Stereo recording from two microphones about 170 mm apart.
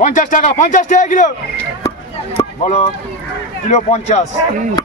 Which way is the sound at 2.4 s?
25° left (ahead or behind).